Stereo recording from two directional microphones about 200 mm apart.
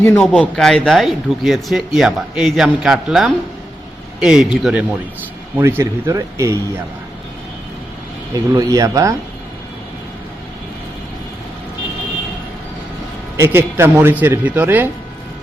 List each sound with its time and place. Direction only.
0.0 s a man's voice: 10° left (ahead or behind); by 6.8 s 15° right (ahead or behind)
8.5 s a man's voice: 15° right (ahead or behind)
13.3 s a man's voice: 10° right (ahead or behind)